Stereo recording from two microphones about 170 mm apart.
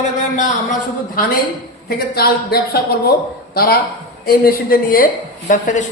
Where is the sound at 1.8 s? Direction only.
70° left (ahead or behind).